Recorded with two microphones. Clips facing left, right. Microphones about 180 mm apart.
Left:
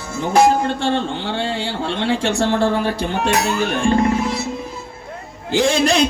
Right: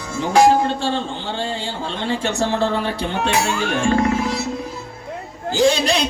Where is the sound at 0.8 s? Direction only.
65° left (ahead or behind).